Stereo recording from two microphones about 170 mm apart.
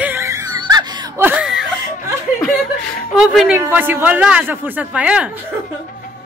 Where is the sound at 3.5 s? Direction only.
10° right (ahead or behind).